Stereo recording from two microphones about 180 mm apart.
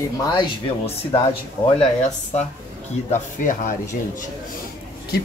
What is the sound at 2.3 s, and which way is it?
Speech, 40° left (ahead or behind).